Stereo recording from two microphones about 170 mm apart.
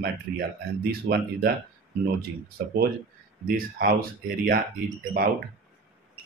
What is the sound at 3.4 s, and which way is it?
Speech, 55° right (ahead or behind).